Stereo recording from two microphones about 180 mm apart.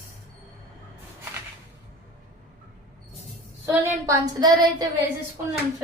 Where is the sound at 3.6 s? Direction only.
15° right (ahead or behind).